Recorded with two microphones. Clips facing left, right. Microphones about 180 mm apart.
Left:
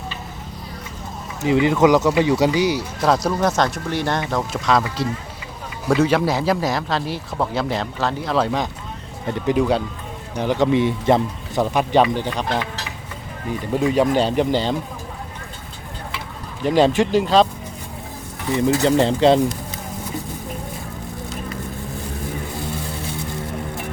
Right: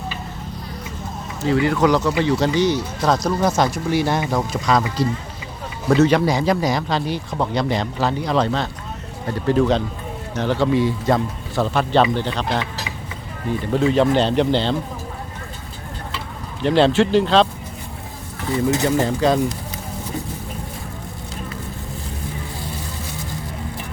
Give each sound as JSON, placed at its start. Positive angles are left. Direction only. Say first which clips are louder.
{"t": 1.4, "sound": "speech", "louder": "left 2 dB", "side_deg": 20}
{"t": 13.7, "sound": "speech", "louder": "right 1 dB", "side_deg": 10}
{"t": 16.6, "sound": "speech", "louder": "right 1 dB", "side_deg": 10}
{"t": 18.5, "sound": "speech", "louder": "left 2 dB", "side_deg": 25}